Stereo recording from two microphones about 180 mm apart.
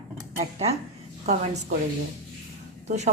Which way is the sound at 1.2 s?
40° right (ahead or behind).